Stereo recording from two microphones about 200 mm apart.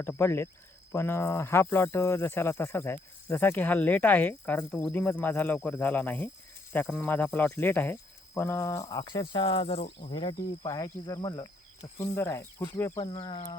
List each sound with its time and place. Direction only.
0.0 s speech: 10° left (ahead or behind)